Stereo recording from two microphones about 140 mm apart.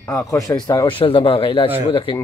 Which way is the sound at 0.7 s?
35° left (ahead or behind).